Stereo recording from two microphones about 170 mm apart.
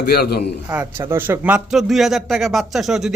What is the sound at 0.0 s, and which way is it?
Speech, 70° left (ahead or behind).